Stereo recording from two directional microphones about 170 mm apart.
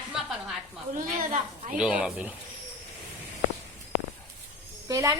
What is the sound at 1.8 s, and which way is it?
Speech, 5° right (ahead or behind).